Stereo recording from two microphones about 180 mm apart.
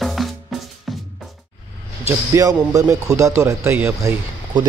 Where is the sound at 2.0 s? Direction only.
15° right (ahead or behind).